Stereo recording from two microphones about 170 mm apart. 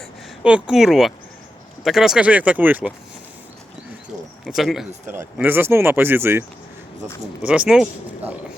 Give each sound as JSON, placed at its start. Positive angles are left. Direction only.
{"t": 0.4, "sound": "speech", "side_deg": -5}
{"t": 4.4, "sound": "speech", "side_deg": 0}
{"t": 5.0, "sound": "speech", "side_deg": -10}
{"t": 7.4, "sound": "speech", "side_deg": -5}